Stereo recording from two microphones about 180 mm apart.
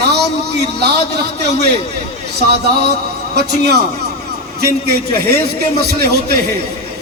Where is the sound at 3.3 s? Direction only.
60° right (ahead or behind).